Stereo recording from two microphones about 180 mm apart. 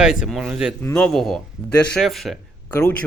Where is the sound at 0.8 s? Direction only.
10° left (ahead or behind).